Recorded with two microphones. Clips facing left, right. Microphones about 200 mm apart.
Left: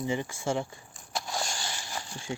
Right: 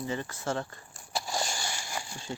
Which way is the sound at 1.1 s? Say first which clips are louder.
Right 1 dB; centre (ahead or behind).